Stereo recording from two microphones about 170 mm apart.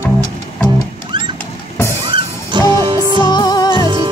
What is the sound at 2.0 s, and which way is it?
Music, 30° right (ahead or behind).